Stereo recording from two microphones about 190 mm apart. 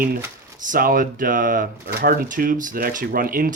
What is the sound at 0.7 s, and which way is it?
Speech, 50° right (ahead or behind).